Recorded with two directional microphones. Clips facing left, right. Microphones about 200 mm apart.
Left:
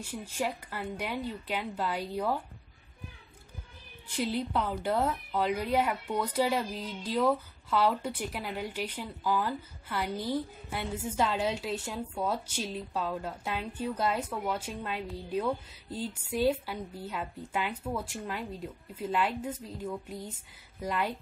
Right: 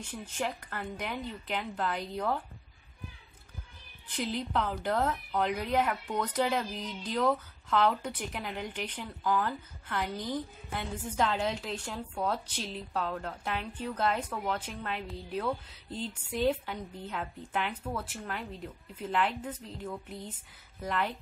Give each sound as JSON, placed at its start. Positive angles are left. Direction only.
{"t": 0.0, "sound": "speech", "side_deg": 10}
{"t": 4.1, "sound": "speech", "side_deg": 10}